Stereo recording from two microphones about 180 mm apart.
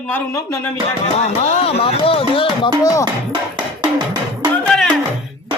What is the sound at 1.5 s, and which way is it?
Speech, 35° left (ahead or behind).